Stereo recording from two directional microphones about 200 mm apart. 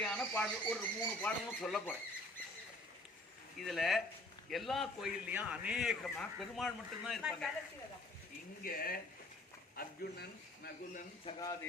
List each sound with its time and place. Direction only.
0.0 s speech: 5° left (ahead or behind)
3.6 s a man's voice: centre (ahead or behind)
8.6 s speech: 45° left (ahead or behind)
11.3 s speech: 25° left (ahead or behind)